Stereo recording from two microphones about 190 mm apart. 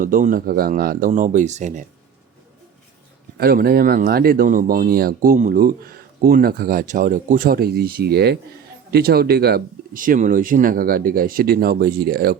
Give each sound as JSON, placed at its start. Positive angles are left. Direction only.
{"t": 0.0, "sound": "speech", "side_deg": -45}
{"t": 3.3, "sound": "speech", "side_deg": -50}